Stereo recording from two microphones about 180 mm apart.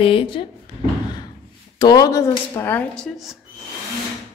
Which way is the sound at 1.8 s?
20° left (ahead or behind).